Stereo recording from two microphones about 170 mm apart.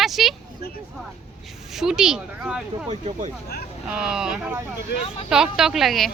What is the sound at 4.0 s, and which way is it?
Speech, 5° right (ahead or behind).